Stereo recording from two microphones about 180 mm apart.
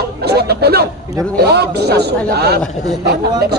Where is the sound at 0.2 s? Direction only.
65° right (ahead or behind).